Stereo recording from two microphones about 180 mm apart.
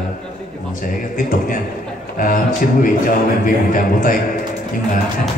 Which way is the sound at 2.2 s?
50° left (ahead or behind).